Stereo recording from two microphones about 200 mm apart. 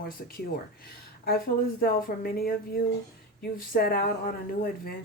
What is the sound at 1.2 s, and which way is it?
Speech, 50° left (ahead or behind).